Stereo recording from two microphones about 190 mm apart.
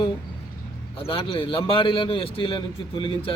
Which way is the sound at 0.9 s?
25° left (ahead or behind).